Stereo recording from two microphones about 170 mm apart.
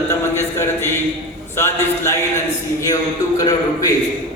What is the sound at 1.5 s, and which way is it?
A man's voice, 15° left (ahead or behind).